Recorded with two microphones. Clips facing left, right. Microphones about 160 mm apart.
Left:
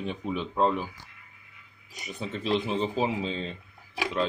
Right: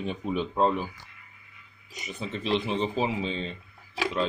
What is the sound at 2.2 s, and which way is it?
Speech, 5° left (ahead or behind).